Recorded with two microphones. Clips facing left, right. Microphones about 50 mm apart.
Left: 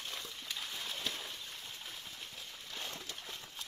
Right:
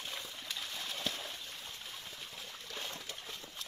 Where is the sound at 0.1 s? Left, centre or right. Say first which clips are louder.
Right 1 dB; centre.